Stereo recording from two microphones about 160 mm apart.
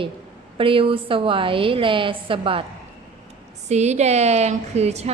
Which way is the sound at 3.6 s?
45° right (ahead or behind).